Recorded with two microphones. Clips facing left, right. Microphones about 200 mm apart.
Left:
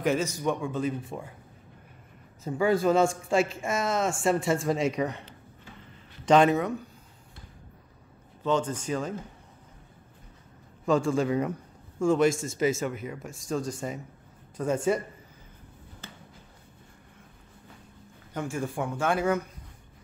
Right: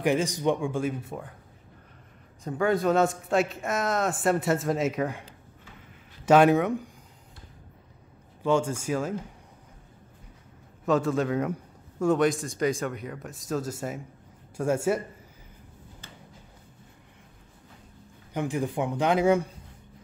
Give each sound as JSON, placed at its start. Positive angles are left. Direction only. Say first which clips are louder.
{"t": 0.0, "sound": "speech", "louder": "right 2 dB", "side_deg": -15}
{"t": 2.4, "sound": "a man's voice", "louder": "left 1 dB", "side_deg": 0}
{"t": 6.2, "sound": "speech", "louder": "right 2 dB", "side_deg": -10}
{"t": 8.4, "sound": "speech", "louder": "right 2 dB", "side_deg": -10}
{"t": 10.9, "sound": "a man's voice", "louder": "even", "side_deg": 0}
{"t": 18.3, "sound": "speech", "louder": "right 3 dB", "side_deg": -15}